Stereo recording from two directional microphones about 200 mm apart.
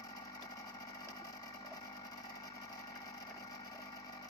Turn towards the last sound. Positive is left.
turn(degrees=15)  # may be behind; listen again after turning